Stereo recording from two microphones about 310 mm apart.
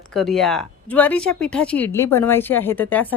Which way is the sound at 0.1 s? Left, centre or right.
Centre.